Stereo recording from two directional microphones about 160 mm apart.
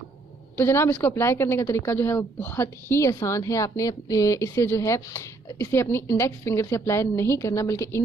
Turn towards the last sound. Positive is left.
turn(degrees=20)  # may be behind; listen again after turning